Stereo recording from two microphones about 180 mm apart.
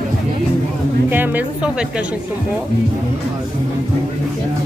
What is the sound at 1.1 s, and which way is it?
Music, 10° right (ahead or behind).